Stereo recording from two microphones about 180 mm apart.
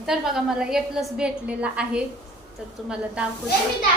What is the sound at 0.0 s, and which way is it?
A woman's voice, centre (ahead or behind).